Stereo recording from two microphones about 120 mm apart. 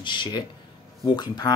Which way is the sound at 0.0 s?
40° left (ahead or behind).